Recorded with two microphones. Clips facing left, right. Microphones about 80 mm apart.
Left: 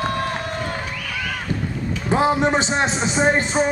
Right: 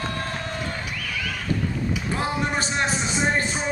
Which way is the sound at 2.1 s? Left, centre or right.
Left.